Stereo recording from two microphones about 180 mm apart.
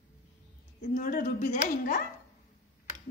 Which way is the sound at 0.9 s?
50° left (ahead or behind).